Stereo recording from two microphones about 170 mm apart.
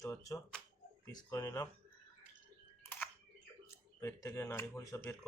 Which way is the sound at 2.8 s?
10° left (ahead or behind).